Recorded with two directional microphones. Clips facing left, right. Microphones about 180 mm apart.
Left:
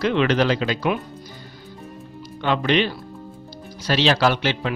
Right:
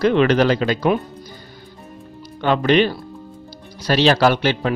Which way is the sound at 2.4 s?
45° right (ahead or behind).